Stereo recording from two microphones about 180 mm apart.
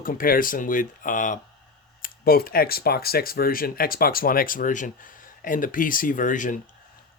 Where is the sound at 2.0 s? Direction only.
55° left (ahead or behind).